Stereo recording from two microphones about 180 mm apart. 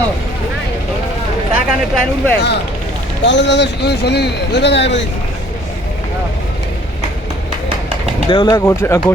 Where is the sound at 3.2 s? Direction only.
80° left.